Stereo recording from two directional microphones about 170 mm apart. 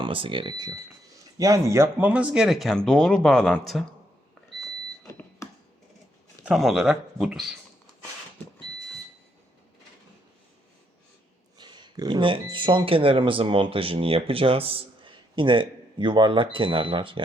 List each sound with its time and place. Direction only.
0.0 s speech: 30° right (ahead or behind); by 3.8 s centre (ahead or behind)
5.0 s beep: 20° left (ahead or behind)
6.4 s speech: centre (ahead or behind)
11.5 s speech: 25° right (ahead or behind)